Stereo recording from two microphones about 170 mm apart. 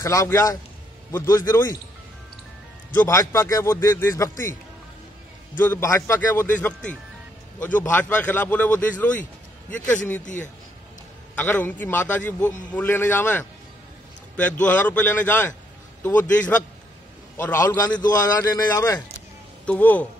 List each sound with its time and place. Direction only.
0.0 s speech: 20° left (ahead or behind)
3.0 s speech: 15° left (ahead or behind)
5.6 s a man's voice: 15° left (ahead or behind)
11.3 s speech: 10° left (ahead or behind)
19.6 s speech: 10° left (ahead or behind)